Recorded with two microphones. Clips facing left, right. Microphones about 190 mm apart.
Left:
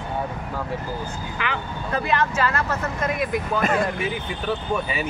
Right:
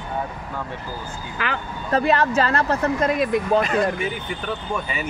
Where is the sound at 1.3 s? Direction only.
40° right (ahead or behind).